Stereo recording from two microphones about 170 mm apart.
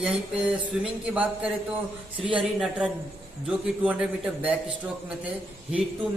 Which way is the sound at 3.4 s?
10° right (ahead or behind).